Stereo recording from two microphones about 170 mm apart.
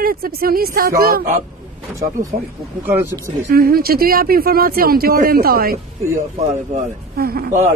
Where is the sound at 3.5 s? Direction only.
60° right (ahead or behind).